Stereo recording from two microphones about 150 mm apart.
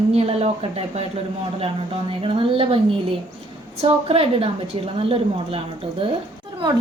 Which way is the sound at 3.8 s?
40° right (ahead or behind).